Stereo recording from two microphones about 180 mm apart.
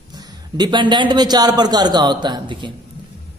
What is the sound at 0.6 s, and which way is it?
A man's voice, 25° right (ahead or behind).